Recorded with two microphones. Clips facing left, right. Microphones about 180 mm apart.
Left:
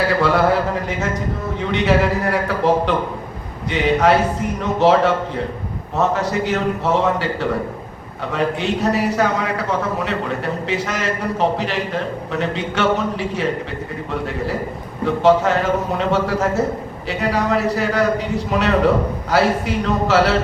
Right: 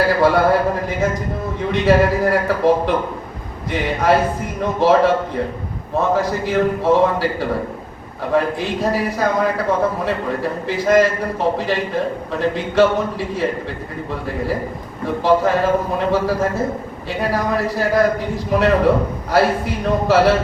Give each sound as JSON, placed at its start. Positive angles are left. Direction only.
{"t": 0.2, "sound": "a man's voice", "side_deg": 70}